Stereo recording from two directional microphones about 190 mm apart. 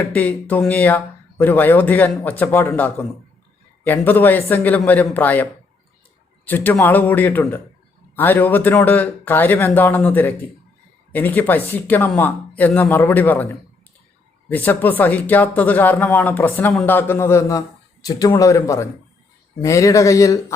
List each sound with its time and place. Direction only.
0.0 s speech: 10° left (ahead or behind)
14.5 s speech: 10° left (ahead or behind)